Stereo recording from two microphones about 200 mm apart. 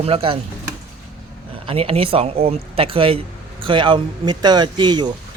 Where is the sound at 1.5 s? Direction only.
25° right (ahead or behind).